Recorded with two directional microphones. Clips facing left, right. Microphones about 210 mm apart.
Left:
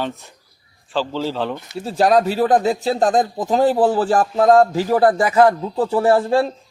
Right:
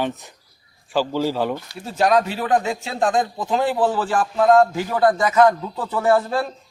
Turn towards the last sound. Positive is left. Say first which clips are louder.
# left 3 dB
turn(degrees=30)  # may be behind; listen again after turning